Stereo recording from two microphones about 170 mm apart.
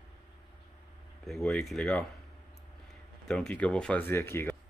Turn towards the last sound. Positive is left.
turn(degrees=15)  # may be behind; listen again after turning